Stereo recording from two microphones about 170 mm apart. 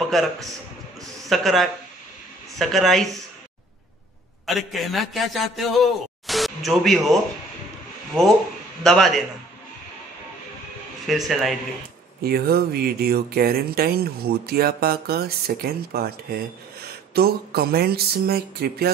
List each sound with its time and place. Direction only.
0.1 s a man's voice: centre (ahead or behind)
4.5 s a man's voice: centre (ahead or behind)
8.2 s a man's voice: 5° left (ahead or behind)
11.1 s a man's voice: centre (ahead or behind)
12.2 s speech: 65° right (ahead or behind)